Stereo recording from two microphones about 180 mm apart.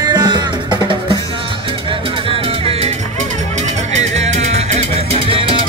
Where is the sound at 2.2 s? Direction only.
30° right (ahead or behind).